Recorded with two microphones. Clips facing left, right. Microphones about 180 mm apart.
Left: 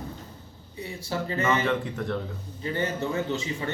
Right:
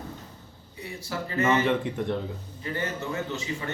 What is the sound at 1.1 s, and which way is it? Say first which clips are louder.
Speech: left 1 dB; 25° left (ahead or behind).